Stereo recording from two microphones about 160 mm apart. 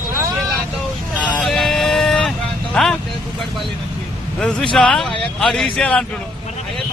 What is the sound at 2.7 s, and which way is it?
Speech, 5° left (ahead or behind).